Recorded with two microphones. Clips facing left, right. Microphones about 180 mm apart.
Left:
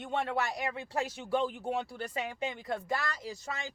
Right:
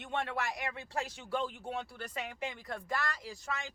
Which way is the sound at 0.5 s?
30° left (ahead or behind).